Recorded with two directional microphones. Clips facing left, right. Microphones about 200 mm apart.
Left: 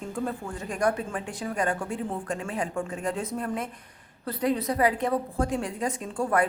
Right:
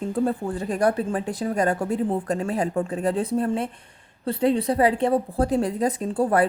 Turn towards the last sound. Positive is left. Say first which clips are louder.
# right 5 dB
turn(degrees=-35)  # may be behind; listen again after turning